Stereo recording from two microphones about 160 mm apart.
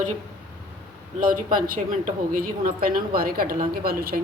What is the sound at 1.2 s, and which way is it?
Speech, 60° right (ahead or behind).